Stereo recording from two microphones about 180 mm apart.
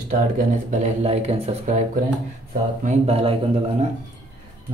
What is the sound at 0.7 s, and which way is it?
Speech, 40° right (ahead or behind).